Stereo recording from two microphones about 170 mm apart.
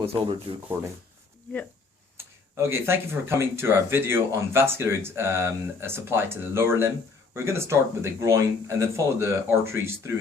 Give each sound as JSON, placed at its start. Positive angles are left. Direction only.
{"t": 0.0, "sound": "speech", "side_deg": -35}
{"t": 2.1, "sound": "speech", "side_deg": -15}